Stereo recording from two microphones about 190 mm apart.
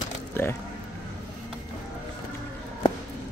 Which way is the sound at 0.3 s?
15° left (ahead or behind).